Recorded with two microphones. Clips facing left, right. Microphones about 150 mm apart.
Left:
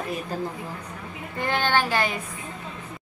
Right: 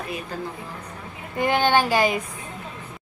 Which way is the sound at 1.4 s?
15° right (ahead or behind).